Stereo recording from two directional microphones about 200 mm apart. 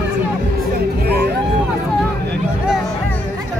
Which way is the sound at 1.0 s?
55° right (ahead or behind).